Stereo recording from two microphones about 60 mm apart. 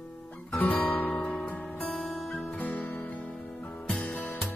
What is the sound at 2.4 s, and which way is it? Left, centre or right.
Music, centre.